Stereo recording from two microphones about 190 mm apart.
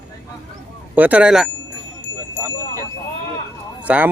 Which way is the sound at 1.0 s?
10° right (ahead or behind).